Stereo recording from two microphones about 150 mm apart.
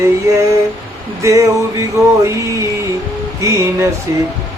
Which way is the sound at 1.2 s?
20° right (ahead or behind).